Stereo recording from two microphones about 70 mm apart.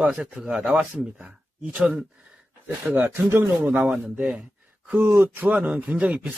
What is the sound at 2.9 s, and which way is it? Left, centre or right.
Speech, right.